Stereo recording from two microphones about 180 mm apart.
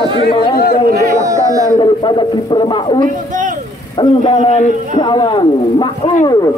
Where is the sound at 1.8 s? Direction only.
25° left (ahead or behind).